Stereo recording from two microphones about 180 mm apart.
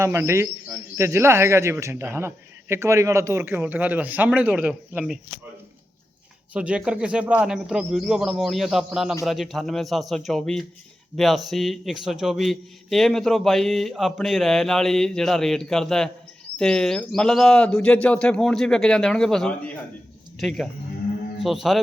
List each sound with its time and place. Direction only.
0.0 s a man's voice: 15° right (ahead or behind)
6.5 s a man's voice: 5° right (ahead or behind)